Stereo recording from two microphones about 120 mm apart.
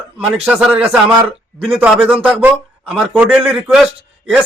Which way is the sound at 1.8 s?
10° right (ahead or behind).